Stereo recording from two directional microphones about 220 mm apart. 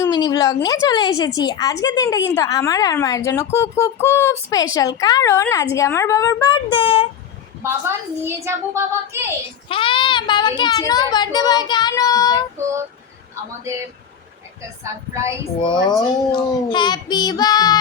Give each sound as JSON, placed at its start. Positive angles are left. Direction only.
{"t": 0.0, "sound": "speech", "side_deg": 15}
{"t": 7.6, "sound": "a woman's voice", "side_deg": -10}
{"t": 9.6, "sound": "a child's voice", "side_deg": 25}
{"t": 15.6, "sound": "speech", "side_deg": 20}